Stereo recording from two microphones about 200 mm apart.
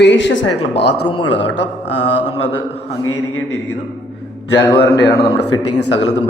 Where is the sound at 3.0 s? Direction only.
90° left.